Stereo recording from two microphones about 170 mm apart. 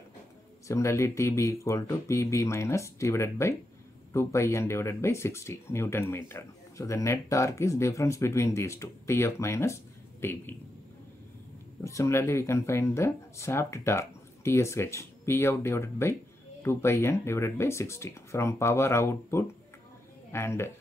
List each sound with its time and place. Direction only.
0.7 s speech: 15° left (ahead or behind)
11.8 s speech: 15° left (ahead or behind)